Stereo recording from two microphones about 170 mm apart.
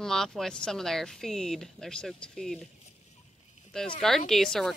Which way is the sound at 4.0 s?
Centre (ahead or behind).